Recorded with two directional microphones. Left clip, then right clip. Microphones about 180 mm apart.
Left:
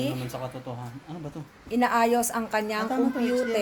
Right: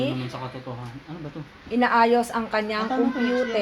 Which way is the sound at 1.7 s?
20° left (ahead or behind).